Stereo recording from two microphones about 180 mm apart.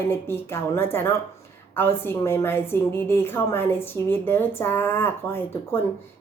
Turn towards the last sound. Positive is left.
turn(degrees=10)  # may be behind; listen again after turning